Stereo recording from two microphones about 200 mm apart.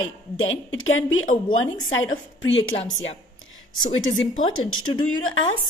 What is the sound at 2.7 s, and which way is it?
Speech, 30° left (ahead or behind).